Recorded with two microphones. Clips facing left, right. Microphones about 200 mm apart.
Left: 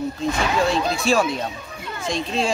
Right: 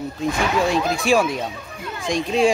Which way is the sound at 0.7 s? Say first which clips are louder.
Right 1 dB; 15° right (ahead or behind).